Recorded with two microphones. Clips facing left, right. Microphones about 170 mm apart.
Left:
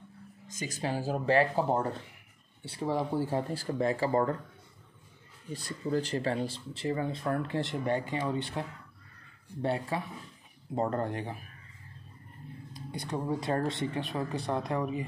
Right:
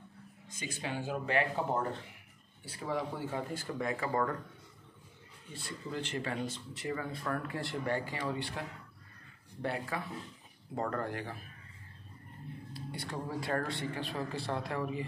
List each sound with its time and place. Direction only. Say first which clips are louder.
0.5 s speech: left 5 dB; 40° left (ahead or behind)
5.5 s speech: left 9 dB; 40° left (ahead or behind); by 11.4 s 20° left (ahead or behind)
12.7 s speech: left 5 dB; 20° left (ahead or behind)